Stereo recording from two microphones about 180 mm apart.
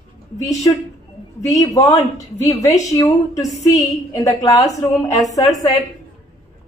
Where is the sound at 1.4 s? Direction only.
20° left (ahead or behind).